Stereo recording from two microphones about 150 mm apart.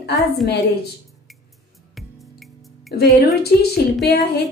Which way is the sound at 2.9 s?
90° left.